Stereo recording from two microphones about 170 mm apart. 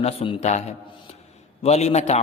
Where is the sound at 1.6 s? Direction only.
40° left (ahead or behind).